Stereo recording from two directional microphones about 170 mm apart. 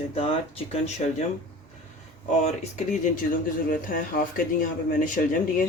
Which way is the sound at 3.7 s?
55° left (ahead or behind).